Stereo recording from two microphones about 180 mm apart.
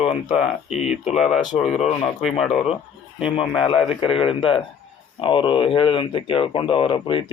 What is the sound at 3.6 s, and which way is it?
Speech, 30° left (ahead or behind).